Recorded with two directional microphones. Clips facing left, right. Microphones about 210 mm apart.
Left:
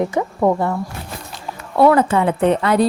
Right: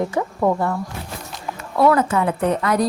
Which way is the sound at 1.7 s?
30° left (ahead or behind).